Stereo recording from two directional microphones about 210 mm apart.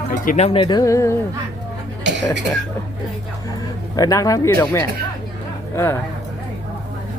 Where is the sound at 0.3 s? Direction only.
30° left (ahead or behind); by 1.1 s 15° left (ahead or behind).